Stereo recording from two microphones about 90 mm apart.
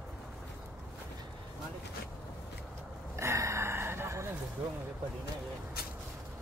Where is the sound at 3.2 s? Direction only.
30° right (ahead or behind).